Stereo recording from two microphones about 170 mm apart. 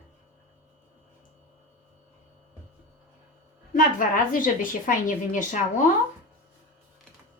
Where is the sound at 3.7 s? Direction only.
55° left (ahead or behind).